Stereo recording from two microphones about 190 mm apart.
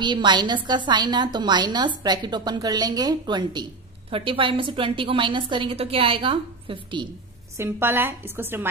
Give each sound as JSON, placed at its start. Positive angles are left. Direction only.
{"t": 0.0, "sound": "a woman's voice", "side_deg": -25}
{"t": 7.5, "sound": "a woman's voice", "side_deg": -15}